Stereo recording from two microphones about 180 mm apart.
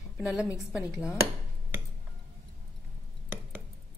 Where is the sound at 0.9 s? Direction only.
15° left (ahead or behind).